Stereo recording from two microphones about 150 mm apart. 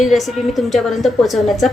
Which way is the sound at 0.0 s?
Centre (ahead or behind).